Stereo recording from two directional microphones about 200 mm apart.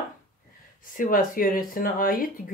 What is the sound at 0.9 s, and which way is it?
Speech, 45° left (ahead or behind).